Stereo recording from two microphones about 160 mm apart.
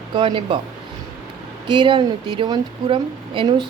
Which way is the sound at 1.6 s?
30° right (ahead or behind).